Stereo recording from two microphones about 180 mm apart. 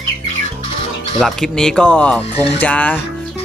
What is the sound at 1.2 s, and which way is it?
Speech, centre (ahead or behind).